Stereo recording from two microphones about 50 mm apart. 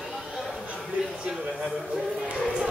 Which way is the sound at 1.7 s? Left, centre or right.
Centre.